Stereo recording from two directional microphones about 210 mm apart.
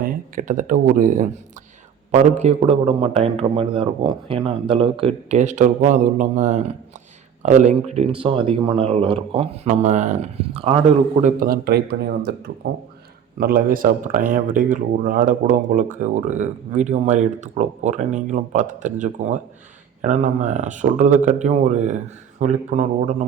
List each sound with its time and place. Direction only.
0.0 s a man's voice: 40° right (ahead or behind)
11.2 s speech: 45° right (ahead or behind)